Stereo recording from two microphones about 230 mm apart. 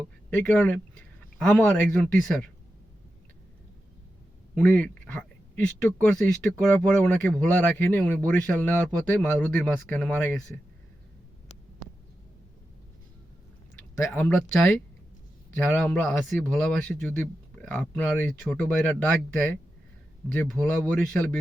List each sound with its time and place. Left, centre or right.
0.3 s speech: centre
4.5 s a sound: centre
6.1 s speech: centre
14.1 s speech: centre
15.5 s speech: centre